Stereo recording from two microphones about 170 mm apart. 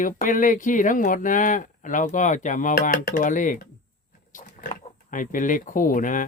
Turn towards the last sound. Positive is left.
turn(degrees=50)  # may be behind; listen again after turning